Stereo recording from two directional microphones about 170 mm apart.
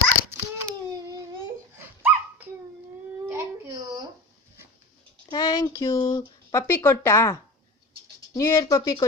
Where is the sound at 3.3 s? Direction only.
15° right (ahead or behind).